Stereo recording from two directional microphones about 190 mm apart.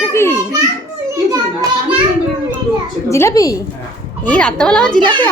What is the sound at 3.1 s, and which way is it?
Speech, 15° left (ahead or behind).